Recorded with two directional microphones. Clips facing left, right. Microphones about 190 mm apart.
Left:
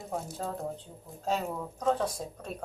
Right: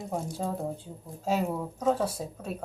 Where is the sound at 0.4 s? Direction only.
5° right (ahead or behind).